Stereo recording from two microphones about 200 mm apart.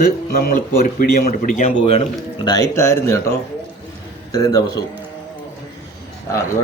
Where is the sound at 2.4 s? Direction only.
15° left (ahead or behind).